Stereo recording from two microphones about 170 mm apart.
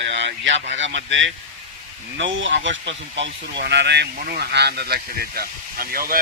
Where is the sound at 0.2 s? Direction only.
90° right.